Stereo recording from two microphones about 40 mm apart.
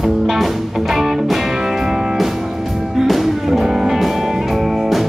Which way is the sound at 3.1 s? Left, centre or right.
Centre.